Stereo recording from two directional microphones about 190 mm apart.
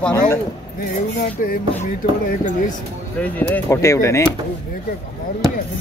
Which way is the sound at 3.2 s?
10° left (ahead or behind).